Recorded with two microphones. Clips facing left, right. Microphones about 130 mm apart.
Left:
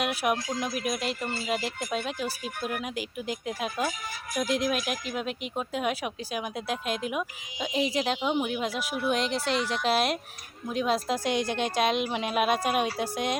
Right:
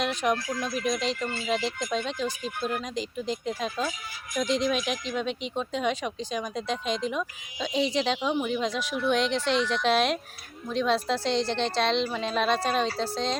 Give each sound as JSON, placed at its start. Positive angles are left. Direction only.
{"t": 0.0, "sound": "speech", "side_deg": 10}
{"t": 0.4, "sound": "speech", "side_deg": 20}
{"t": 0.7, "sound": "speech", "side_deg": 5}
{"t": 1.2, "sound": "speech", "side_deg": 35}
{"t": 1.5, "sound": "speech", "side_deg": 10}
{"t": 8.2, "sound": "speech", "side_deg": 15}